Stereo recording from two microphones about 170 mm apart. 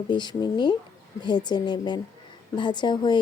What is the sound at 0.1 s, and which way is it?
Speech, 25° left (ahead or behind).